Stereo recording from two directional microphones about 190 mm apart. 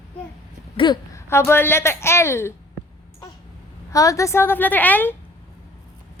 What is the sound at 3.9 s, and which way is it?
A woman's voice, 15° left (ahead or behind).